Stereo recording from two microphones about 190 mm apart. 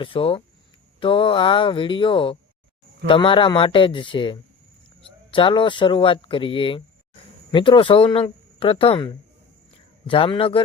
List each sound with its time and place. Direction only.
0.0 s speech: 30° left (ahead or behind)